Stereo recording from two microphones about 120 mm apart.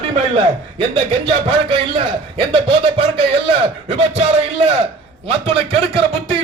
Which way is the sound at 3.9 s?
65° right (ahead or behind).